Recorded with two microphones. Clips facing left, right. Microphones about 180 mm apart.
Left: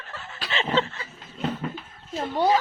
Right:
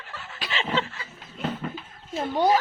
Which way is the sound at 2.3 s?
10° right (ahead or behind).